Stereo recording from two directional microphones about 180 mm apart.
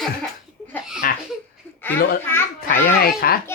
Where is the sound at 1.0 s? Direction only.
55° left (ahead or behind).